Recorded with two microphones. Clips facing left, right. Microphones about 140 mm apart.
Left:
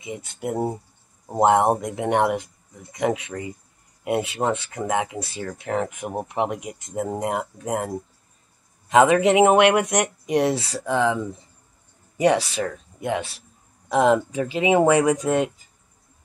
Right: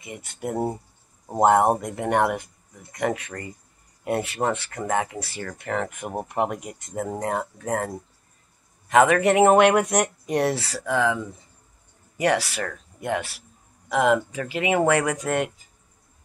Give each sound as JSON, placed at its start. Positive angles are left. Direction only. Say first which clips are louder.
{"t": 0.2, "sound": "speech", "louder": "even", "side_deg": 10}
{"t": 8.9, "sound": "speech", "louder": "left 2 dB", "side_deg": 20}
{"t": 9.7, "sound": "speech", "louder": "even", "side_deg": -5}
{"t": 10.0, "sound": "speech", "louder": "left 2 dB", "side_deg": 10}
{"t": 12.2, "sound": "speech", "louder": "left 3 dB", "side_deg": 20}
{"t": 13.8, "sound": "speech", "louder": "left 2 dB", "side_deg": 25}